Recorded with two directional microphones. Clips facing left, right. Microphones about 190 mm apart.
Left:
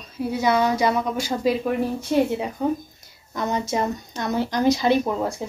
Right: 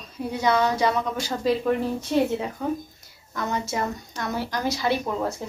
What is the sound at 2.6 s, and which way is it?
Speech, 20° left (ahead or behind).